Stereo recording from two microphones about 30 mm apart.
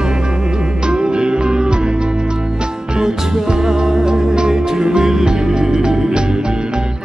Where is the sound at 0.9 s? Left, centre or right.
Right.